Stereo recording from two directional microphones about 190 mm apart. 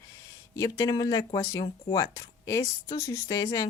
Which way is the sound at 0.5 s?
20° left (ahead or behind).